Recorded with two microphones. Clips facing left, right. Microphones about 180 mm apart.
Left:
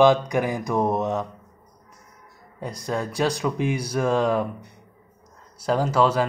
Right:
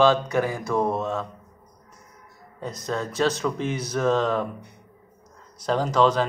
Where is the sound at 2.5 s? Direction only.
10° left (ahead or behind).